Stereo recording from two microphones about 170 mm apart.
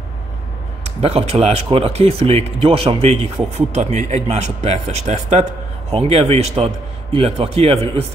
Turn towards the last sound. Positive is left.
turn(degrees=-35)  # may be behind; listen again after turning